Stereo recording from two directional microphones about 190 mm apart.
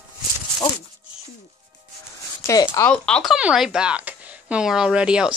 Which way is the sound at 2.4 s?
20° left (ahead or behind).